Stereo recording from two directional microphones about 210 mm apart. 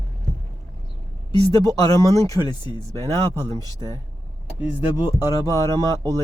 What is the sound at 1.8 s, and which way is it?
Speech, 15° left (ahead or behind).